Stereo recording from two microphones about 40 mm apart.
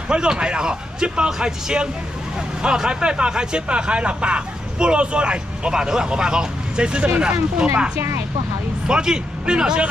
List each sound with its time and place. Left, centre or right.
0.1 s speech: right
8.8 s speech: centre